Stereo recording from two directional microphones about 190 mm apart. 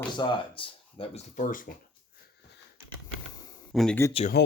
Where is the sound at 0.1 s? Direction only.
25° left (ahead or behind); by 1.8 s 45° left (ahead or behind).